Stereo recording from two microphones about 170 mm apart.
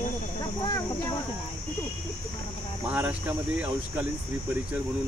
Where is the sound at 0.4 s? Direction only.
25° left (ahead or behind).